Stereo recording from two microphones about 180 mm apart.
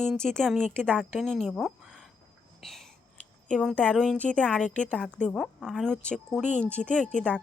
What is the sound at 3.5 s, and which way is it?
A woman's voice, 5° left (ahead or behind).